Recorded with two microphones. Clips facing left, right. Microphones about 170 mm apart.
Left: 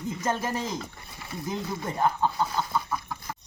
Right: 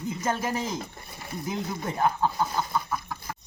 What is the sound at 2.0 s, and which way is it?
Speech, 10° right (ahead or behind).